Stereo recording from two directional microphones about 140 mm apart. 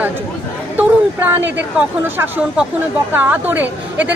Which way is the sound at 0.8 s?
15° right (ahead or behind).